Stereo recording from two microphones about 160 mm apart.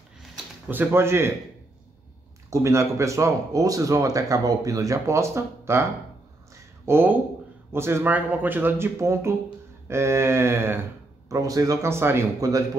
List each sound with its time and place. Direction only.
0.7 s speech: 15° right (ahead or behind)
2.5 s speech: 20° right (ahead or behind)
6.5 s a sound: 15° right (ahead or behind)
7.7 s speech: 15° right (ahead or behind)